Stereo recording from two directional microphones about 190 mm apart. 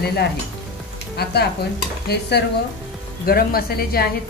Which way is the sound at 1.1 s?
55° left (ahead or behind).